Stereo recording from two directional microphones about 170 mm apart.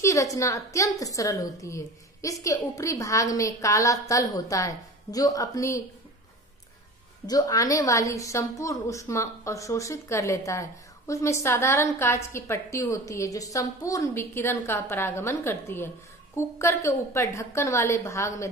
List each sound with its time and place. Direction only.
0.0 s a woman's voice: 20° left (ahead or behind)
7.2 s a woman's voice: 20° left (ahead or behind)